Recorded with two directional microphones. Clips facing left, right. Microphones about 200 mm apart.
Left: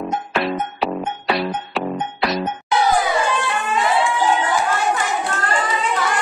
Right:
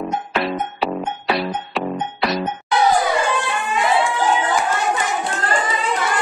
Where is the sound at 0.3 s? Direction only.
Centre (ahead or behind).